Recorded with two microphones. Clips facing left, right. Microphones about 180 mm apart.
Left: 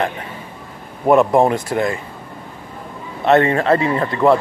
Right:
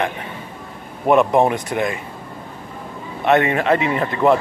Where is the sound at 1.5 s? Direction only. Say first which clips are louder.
Left 2 dB; 15° right (ahead or behind).